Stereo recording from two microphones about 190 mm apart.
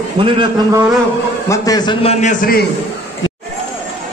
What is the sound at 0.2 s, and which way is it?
Speech, 30° right (ahead or behind).